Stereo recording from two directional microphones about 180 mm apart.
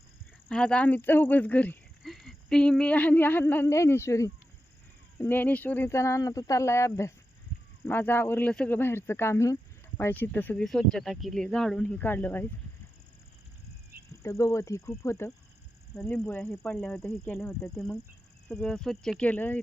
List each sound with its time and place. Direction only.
0.4 s speech: 5° left (ahead or behind)
14.2 s speech: 15° left (ahead or behind)
16.0 s speech: 5° left (ahead or behind)
18.4 s speech: 5° left (ahead or behind)